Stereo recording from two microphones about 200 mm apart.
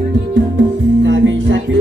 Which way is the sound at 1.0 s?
65° right (ahead or behind).